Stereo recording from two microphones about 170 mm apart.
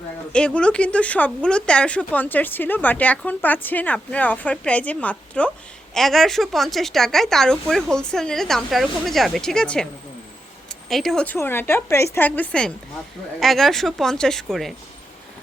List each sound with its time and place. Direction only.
0.3 s a woman's voice: 5° left (ahead or behind)